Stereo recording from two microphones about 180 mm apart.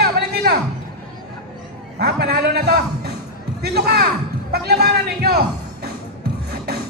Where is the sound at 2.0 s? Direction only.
65° right (ahead or behind).